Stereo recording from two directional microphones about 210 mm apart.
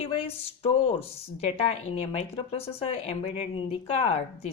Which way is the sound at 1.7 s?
30° left (ahead or behind).